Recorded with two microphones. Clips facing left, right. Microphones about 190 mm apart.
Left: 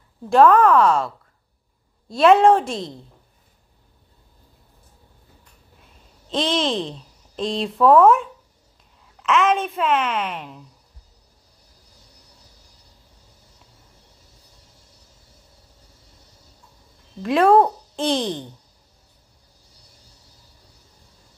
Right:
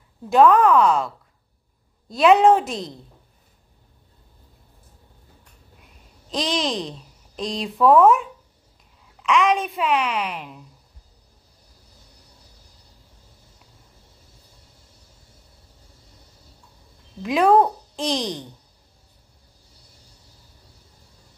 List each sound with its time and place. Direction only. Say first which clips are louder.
0.3 s a child's voice: left 1 dB; centre (ahead or behind)
6.3 s a child's voice: left 3 dB; centre (ahead or behind)
17.2 s a child's voice: left 2 dB; centre (ahead or behind)